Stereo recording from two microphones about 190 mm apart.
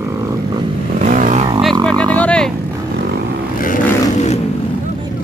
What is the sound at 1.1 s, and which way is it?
Vehicle, 45° right (ahead or behind).